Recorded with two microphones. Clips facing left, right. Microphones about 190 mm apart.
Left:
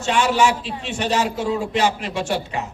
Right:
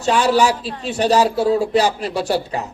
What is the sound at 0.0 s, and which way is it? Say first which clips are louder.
A man's voice: right 3 dB; 35° right (ahead or behind).